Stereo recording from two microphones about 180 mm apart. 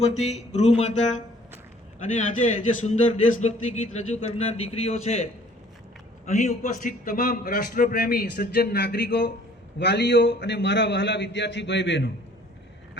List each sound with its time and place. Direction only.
0.0 s a man's voice: 40° left (ahead or behind); by 12.1 s 80° left